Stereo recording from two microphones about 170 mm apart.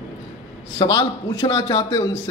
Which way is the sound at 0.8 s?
30° left (ahead or behind).